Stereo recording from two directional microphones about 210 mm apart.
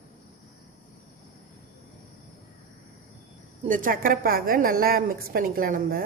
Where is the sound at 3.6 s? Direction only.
40° right (ahead or behind).